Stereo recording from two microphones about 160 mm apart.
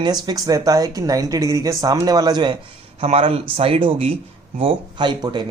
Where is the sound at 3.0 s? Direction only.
40° right (ahead or behind).